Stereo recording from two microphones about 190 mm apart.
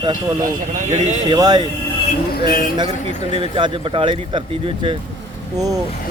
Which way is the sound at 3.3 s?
30° right (ahead or behind).